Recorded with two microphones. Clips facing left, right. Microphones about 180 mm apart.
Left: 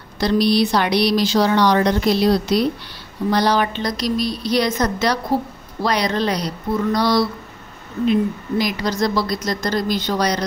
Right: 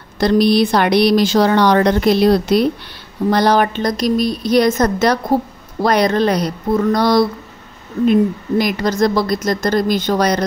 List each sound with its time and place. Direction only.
0.2 s speech: 50° right (ahead or behind)